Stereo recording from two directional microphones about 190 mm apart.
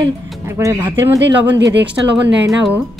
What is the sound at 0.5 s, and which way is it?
Speech, 15° right (ahead or behind).